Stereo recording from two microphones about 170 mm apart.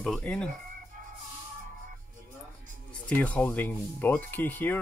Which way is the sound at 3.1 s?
10° left (ahead or behind).